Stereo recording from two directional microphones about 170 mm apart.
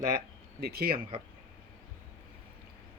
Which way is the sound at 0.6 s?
65° right (ahead or behind).